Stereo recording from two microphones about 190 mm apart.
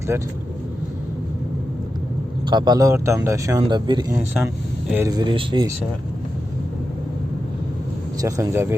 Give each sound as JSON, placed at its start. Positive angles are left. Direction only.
{"t": 0.1, "sound": "speech", "side_deg": -15}
{"t": 2.5, "sound": "speech", "side_deg": -25}
{"t": 4.4, "sound": "speech", "side_deg": -10}
{"t": 8.2, "sound": "speech", "side_deg": -15}